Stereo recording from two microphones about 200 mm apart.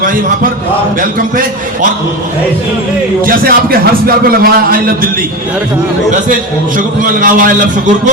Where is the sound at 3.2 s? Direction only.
45° right (ahead or behind).